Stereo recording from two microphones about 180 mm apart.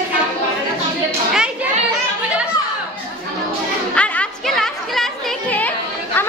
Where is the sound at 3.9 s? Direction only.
5° left (ahead or behind).